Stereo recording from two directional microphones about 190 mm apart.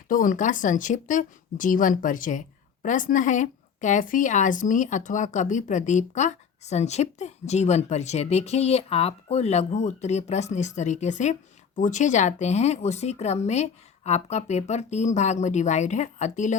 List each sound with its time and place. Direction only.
0.1 s a woman's voice: 45° left (ahead or behind)